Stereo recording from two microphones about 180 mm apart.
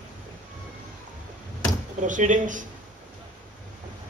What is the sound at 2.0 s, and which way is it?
Speech, 45° right (ahead or behind).